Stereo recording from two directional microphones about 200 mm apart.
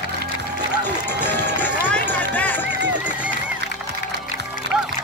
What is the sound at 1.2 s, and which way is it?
Music, 10° left (ahead or behind).